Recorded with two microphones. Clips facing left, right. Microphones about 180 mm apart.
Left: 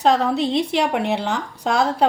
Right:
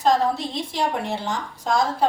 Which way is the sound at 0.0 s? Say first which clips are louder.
Left 3 dB; 70° left (ahead or behind).